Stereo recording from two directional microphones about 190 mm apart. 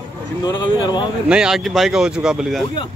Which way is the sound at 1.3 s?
5° right (ahead or behind).